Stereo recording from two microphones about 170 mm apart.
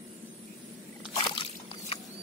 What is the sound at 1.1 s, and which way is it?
Slosh, 30° left (ahead or behind).